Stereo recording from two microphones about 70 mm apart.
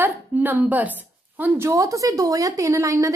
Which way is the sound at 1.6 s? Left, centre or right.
Right.